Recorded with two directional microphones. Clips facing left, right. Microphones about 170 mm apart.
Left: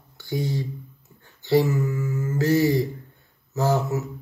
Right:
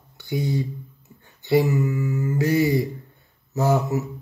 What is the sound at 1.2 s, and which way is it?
Mantra, 20° right (ahead or behind).